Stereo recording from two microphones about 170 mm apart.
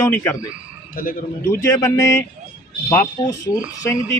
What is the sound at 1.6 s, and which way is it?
Speech, 15° left (ahead or behind).